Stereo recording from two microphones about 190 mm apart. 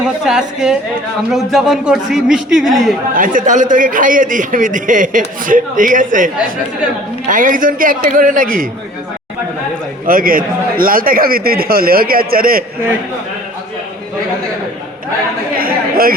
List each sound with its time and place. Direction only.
0.0 s a man's voice: 5° right (ahead or behind)
3.2 s a man's voice: 45° right (ahead or behind)
10.1 s a man's voice: 50° right (ahead or behind)
15.5 s chatter: 50° right (ahead or behind)